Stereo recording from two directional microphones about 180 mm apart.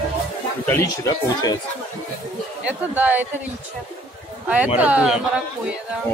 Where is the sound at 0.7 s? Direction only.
15° left (ahead or behind).